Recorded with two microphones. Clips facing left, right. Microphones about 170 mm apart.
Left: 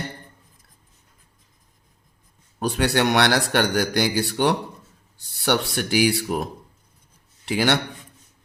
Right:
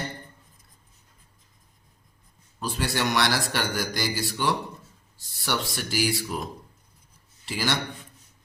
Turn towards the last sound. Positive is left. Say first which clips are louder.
# left 7 dB
turn(degrees=60)  # may be behind; listen again after turning